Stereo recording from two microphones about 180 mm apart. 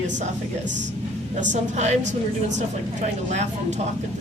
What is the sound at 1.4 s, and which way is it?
Speech, 40° right (ahead or behind).